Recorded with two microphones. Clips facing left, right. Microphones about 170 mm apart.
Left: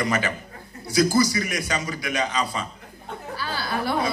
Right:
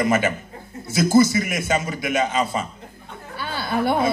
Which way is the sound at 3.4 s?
25° right (ahead or behind).